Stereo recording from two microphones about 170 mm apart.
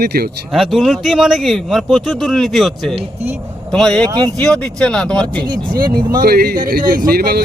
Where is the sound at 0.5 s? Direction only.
Centre (ahead or behind).